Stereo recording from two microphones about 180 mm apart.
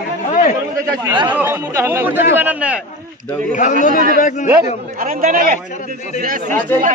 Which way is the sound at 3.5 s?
45° left (ahead or behind).